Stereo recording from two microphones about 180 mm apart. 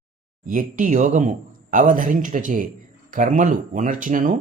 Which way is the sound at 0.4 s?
45° right (ahead or behind).